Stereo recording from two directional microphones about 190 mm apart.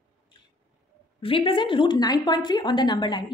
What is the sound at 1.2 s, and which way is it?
Speech, 30° left (ahead or behind).